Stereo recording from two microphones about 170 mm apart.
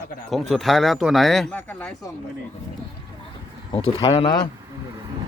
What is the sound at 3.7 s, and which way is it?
Speech, 35° left (ahead or behind).